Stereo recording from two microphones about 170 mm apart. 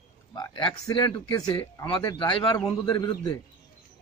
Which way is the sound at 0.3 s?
25° left (ahead or behind).